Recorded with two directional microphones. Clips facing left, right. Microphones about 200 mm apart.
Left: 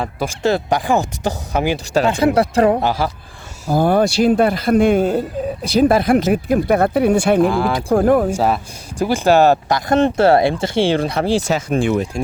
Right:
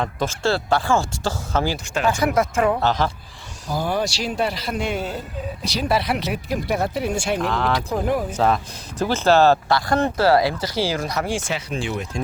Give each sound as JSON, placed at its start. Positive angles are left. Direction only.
{"t": 0.0, "sound": "speech", "side_deg": 10}
{"t": 2.0, "sound": "speech", "side_deg": 30}
{"t": 2.8, "sound": "speech", "side_deg": 10}
{"t": 3.7, "sound": "speech", "side_deg": 55}
{"t": 7.4, "sound": "speech", "side_deg": 10}
{"t": 7.9, "sound": "speech", "side_deg": 50}
{"t": 8.3, "sound": "speech", "side_deg": 10}
{"t": 11.7, "sound": "speech", "side_deg": 55}